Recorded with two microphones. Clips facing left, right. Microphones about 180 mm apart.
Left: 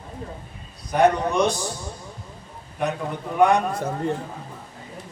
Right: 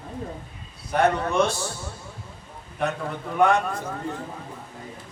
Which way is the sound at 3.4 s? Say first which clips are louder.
Left 2 dB; 15° left (ahead or behind).